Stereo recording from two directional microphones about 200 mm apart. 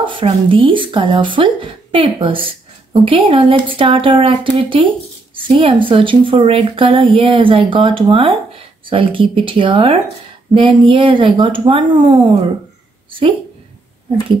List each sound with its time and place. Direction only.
0.0 s speech: 25° right (ahead or behind)